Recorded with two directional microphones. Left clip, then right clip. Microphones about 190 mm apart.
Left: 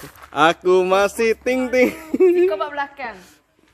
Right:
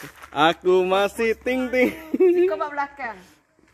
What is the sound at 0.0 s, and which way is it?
Speech, 5° left (ahead or behind).